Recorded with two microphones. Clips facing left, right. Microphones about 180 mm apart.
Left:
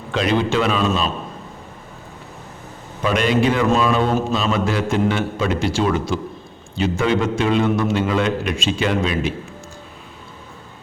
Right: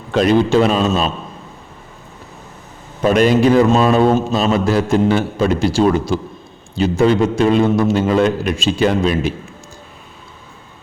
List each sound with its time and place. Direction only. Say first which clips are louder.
0.1 s a man's voice: right 6 dB; 40° right (ahead or behind)
3.0 s a man's voice: right 6 dB; 40° right (ahead or behind)